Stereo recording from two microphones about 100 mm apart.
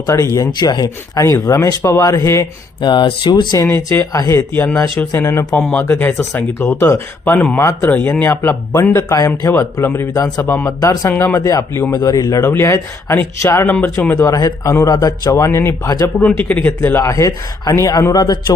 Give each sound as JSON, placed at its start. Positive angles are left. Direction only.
{"t": 0.0, "sound": "speech", "side_deg": 35}
{"t": 0.5, "sound": "speech", "side_deg": 45}
{"t": 1.2, "sound": "speech", "side_deg": 30}
{"t": 2.8, "sound": "speech", "side_deg": 50}
{"t": 3.8, "sound": "speech", "side_deg": 30}
{"t": 4.6, "sound": "speech", "side_deg": 10}
{"t": 5.1, "sound": "speech", "side_deg": 30}
{"t": 6.0, "sound": "speech", "side_deg": 15}
{"t": 9.8, "sound": "speech", "side_deg": 25}
{"t": 10.7, "sound": "speech", "side_deg": 35}
{"t": 16.1, "sound": "speech", "side_deg": 15}